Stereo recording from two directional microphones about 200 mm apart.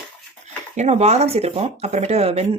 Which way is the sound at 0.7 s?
35° right (ahead or behind).